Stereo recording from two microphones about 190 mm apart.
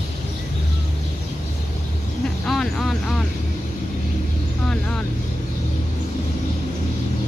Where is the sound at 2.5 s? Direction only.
Centre (ahead or behind).